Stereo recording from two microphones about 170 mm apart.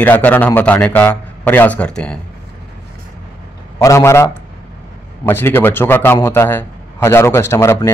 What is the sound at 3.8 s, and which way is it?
Speech, 15° left (ahead or behind).